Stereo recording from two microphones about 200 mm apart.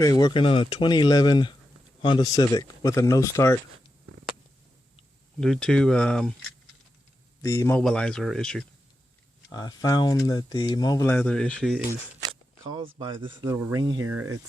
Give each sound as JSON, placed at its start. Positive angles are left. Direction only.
{"t": 0.0, "sound": "speech", "side_deg": 20}
{"t": 5.4, "sound": "a man's voice", "side_deg": 5}
{"t": 7.4, "sound": "a man's voice", "side_deg": 15}
{"t": 9.5, "sound": "speech", "side_deg": 20}
{"t": 12.2, "sound": "shuffling cards", "side_deg": -25}
{"t": 13.4, "sound": "speech", "side_deg": -10}